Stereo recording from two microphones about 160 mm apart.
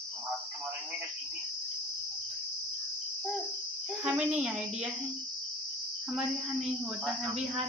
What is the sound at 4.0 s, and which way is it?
Speech, 10° right (ahead or behind).